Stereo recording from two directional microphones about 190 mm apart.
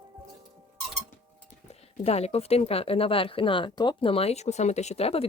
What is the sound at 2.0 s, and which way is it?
Speech, 35° left (ahead or behind).